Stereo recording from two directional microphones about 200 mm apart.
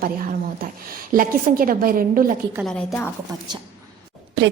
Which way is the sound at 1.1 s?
45° right (ahead or behind).